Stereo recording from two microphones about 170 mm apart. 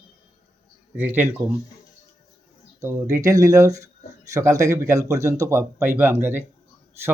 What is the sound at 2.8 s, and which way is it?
Speech, 20° right (ahead or behind).